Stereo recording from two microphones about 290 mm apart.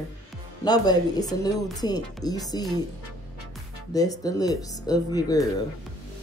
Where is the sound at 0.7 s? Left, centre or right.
Centre.